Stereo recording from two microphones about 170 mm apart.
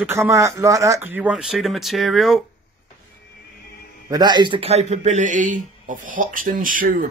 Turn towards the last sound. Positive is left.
turn(degrees=-55)  # may be behind; listen again after turning